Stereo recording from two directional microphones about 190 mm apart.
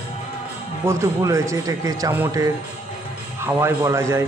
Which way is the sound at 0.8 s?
15° right (ahead or behind).